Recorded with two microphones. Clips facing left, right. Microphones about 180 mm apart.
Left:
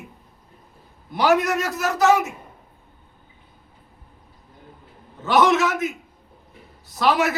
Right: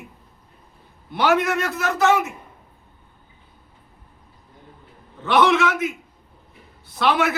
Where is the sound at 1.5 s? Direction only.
40° left (ahead or behind).